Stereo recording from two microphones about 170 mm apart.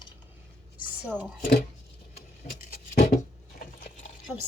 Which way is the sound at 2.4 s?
65° left (ahead or behind).